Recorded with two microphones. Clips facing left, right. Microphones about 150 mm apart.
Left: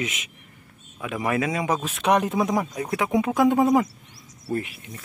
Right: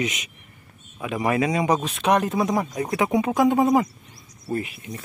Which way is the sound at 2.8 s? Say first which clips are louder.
Right 1 dB; centre (ahead or behind).